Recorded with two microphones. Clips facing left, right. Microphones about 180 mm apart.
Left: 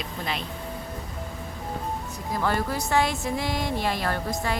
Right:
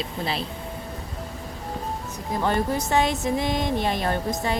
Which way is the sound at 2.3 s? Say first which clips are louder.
Right 3 dB; 20° right (ahead or behind).